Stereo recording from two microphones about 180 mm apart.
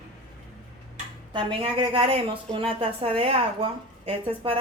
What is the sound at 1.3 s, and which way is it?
A woman's voice, 30° right (ahead or behind).